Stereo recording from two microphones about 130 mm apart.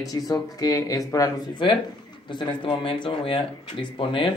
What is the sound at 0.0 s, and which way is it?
Speech, 30° left (ahead or behind).